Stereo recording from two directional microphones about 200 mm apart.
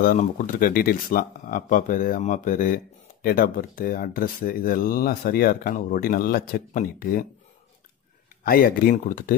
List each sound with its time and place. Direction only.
0.0 s speech: 40° left (ahead or behind)
8.5 s speech: 45° left (ahead or behind)